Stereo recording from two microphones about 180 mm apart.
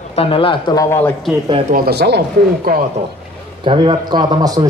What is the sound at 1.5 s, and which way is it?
Speech, 30° right (ahead or behind).